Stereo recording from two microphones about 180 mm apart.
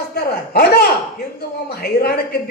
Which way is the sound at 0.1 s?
60° left (ahead or behind).